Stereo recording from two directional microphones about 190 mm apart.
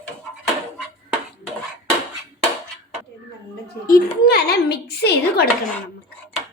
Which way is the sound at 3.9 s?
55° left (ahead or behind).